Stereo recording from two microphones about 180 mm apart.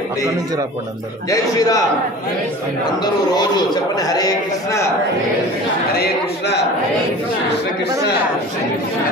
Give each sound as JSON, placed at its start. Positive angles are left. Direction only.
{"t": 1.3, "sound": "a man's voice", "side_deg": 20}
{"t": 2.8, "sound": "a man's voice", "side_deg": 25}
{"t": 5.9, "sound": "a man's voice", "side_deg": 70}